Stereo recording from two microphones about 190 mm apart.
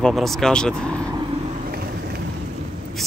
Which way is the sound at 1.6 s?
55° right (ahead or behind).